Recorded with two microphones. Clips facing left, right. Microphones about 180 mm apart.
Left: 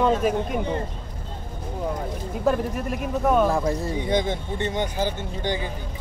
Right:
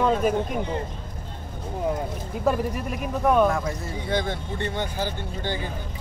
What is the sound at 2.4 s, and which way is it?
Speech, centre (ahead or behind).